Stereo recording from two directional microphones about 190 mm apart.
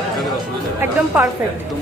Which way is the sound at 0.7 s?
10° right (ahead or behind).